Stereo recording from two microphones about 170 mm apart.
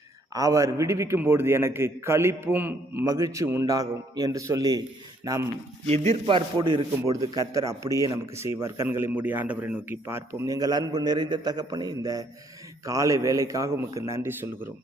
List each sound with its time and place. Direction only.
0.3 s a man's voice: 20° right (ahead or behind)
5.8 s a man's voice: 40° right (ahead or behind); by 14.7 s 15° right (ahead or behind)